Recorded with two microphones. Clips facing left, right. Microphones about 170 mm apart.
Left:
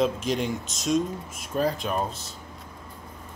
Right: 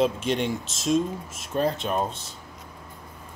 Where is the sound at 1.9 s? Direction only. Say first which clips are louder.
Right 2 dB; 30° right (ahead or behind).